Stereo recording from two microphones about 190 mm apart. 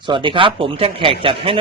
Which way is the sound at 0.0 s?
25° right (ahead or behind).